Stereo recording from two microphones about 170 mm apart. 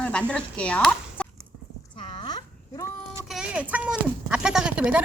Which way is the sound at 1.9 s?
30° left (ahead or behind).